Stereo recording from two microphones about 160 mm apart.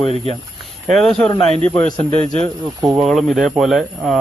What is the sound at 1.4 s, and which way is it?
Speech, 40° right (ahead or behind).